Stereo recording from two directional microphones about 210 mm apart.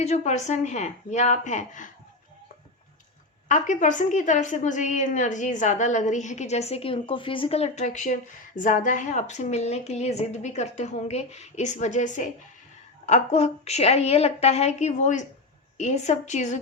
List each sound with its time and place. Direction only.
0.0 s a woman's voice: 35° left (ahead or behind)
3.5 s a woman's voice: 35° left (ahead or behind)